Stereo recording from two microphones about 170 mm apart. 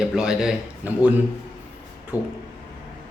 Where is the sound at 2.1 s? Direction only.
20° left (ahead or behind).